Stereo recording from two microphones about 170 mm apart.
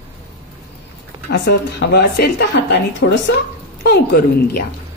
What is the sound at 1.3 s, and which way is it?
Speech, 75° left (ahead or behind).